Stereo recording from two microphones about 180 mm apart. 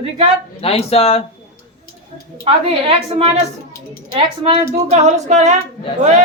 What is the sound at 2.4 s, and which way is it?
Female singing, 30° right (ahead or behind).